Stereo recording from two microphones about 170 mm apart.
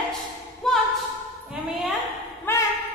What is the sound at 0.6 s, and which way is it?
Music, 5° left (ahead or behind).